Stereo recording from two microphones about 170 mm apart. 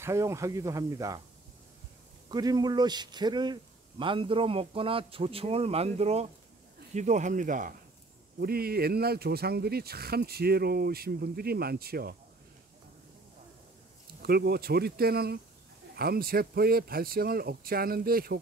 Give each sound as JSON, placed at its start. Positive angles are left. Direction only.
{"t": 0.0, "sound": "speech", "side_deg": -15}
{"t": 2.2, "sound": "speech", "side_deg": -25}
{"t": 8.4, "sound": "speech", "side_deg": -65}
{"t": 14.2, "sound": "speech", "side_deg": -70}